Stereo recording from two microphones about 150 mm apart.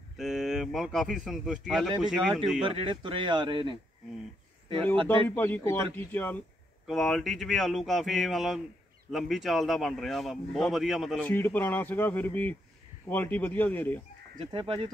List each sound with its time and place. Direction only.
0.2 s speech: centre (ahead or behind)
2.6 s speech: 35° right (ahead or behind)
5.3 s speech: 15° left (ahead or behind)
6.9 s speech: centre (ahead or behind)
11.1 s speech: 15° left (ahead or behind)
14.4 s speech: 35° right (ahead or behind)